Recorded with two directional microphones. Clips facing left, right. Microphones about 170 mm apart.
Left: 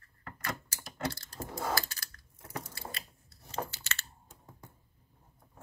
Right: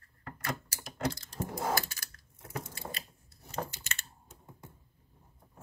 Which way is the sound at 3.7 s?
15° right (ahead or behind).